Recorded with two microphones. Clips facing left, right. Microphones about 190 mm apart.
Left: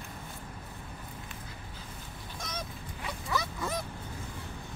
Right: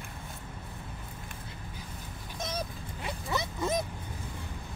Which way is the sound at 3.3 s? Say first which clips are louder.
Right 3 dB; 20° right (ahead or behind).